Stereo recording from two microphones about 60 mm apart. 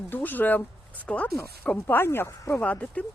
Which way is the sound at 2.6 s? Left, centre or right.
Left.